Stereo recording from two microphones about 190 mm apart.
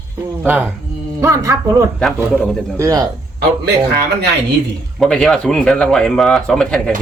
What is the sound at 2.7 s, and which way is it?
Giggle, 20° right (ahead or behind).